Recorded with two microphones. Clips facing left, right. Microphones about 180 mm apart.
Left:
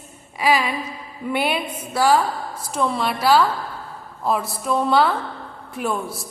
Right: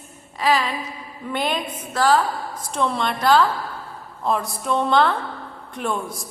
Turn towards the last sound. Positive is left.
turn(degrees=5)  # may be behind; listen again after turning